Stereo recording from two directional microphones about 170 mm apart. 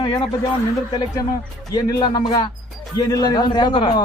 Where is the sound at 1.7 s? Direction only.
25° left (ahead or behind).